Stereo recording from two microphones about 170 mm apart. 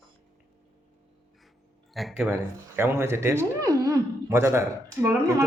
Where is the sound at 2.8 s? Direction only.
15° right (ahead or behind).